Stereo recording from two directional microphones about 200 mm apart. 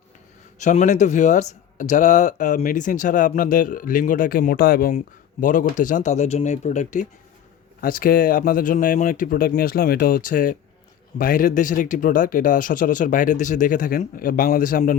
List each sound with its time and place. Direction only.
0.6 s speech: 35° left (ahead or behind)